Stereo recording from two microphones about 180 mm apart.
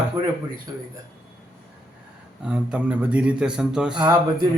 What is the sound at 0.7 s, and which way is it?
Speech, 20° right (ahead or behind).